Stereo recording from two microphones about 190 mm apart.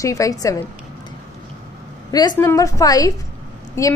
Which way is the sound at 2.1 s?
20° left (ahead or behind).